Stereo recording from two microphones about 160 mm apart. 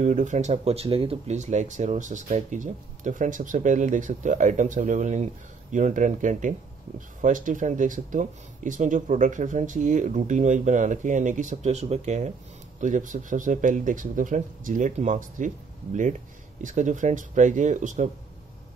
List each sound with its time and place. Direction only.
0.0 s speech: 50° right (ahead or behind)